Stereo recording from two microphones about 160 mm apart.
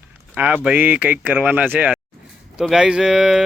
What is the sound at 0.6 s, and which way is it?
Speech, 10° right (ahead or behind).